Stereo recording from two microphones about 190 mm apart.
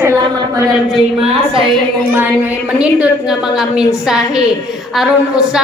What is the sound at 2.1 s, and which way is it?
A woman's voice, 10° right (ahead or behind).